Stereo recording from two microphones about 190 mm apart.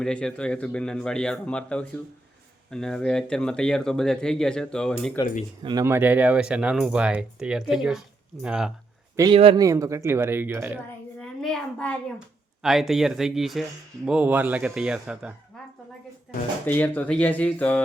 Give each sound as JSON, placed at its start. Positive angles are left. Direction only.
{"t": 0.0, "sound": "speech", "side_deg": 5}
{"t": 5.6, "sound": "speech", "side_deg": -15}
{"t": 9.3, "sound": "speech", "side_deg": -30}
{"t": 9.6, "sound": "speech", "side_deg": -15}
{"t": 11.2, "sound": "a child's voice", "side_deg": 5}
{"t": 16.6, "sound": "speech", "side_deg": 10}